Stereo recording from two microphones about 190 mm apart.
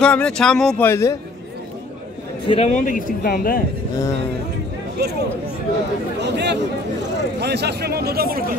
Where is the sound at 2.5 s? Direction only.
35° left (ahead or behind); by 3.6 s 50° left (ahead or behind).